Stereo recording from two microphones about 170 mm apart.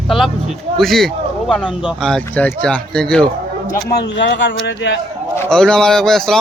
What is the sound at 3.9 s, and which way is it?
A man's voice, 80° left.